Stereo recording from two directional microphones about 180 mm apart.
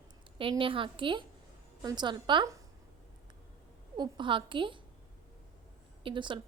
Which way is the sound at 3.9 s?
25° right (ahead or behind).